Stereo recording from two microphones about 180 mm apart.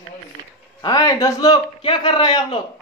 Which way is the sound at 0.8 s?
20° left (ahead or behind).